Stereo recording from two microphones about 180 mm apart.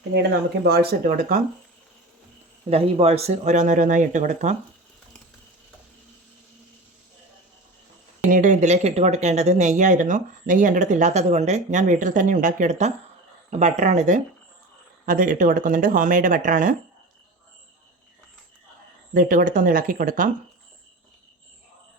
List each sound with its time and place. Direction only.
0.1 s speech: 65° right (ahead or behind)
2.6 s speech: 35° right (ahead or behind)
8.2 s speech: 45° right (ahead or behind)
19.1 s speech: 50° right (ahead or behind)